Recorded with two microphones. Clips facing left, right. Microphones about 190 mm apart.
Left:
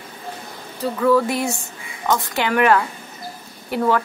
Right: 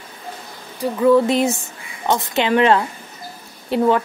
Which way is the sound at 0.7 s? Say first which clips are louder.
Right 3 dB; 20° right (ahead or behind).